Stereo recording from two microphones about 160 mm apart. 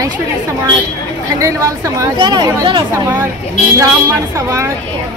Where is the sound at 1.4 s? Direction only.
20° right (ahead or behind).